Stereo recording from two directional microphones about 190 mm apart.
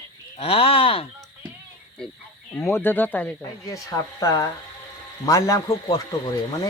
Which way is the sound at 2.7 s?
10° left (ahead or behind).